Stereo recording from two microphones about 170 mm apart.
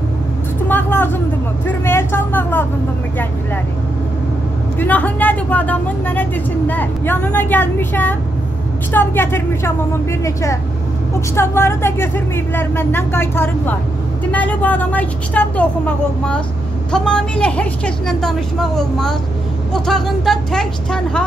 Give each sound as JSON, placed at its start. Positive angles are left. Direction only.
{"t": 0.7, "sound": "speech", "side_deg": 10}
{"t": 4.7, "sound": "a woman's voice", "side_deg": 10}